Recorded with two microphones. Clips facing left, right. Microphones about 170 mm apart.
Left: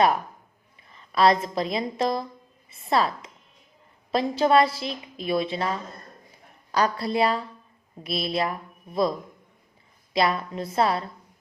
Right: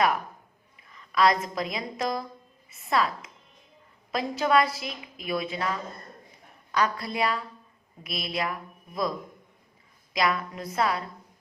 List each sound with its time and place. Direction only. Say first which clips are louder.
0.9 s a woman's voice: left 3 dB; 30° left (ahead or behind)
2.6 s a sound: left 3 dB; 30° left (ahead or behind)
4.1 s a woman's voice: left 4 dB; 30° left (ahead or behind)